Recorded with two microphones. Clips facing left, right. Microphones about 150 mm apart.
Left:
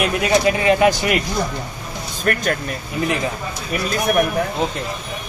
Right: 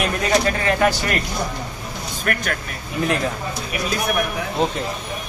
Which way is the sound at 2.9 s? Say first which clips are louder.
Even; 5° left (ahead or behind).